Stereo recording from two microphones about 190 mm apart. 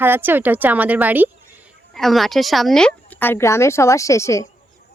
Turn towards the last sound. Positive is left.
turn(degrees=15)  # may be behind; listen again after turning